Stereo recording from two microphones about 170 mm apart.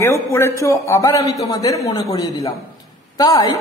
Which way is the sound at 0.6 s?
20° left (ahead or behind).